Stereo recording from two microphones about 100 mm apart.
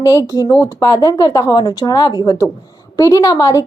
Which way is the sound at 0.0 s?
35° left (ahead or behind).